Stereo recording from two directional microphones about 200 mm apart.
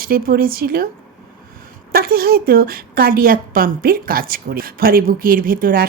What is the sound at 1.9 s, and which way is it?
A woman's voice, 50° right (ahead or behind).